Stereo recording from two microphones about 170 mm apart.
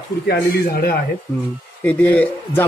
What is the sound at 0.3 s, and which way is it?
Speech, 65° left (ahead or behind).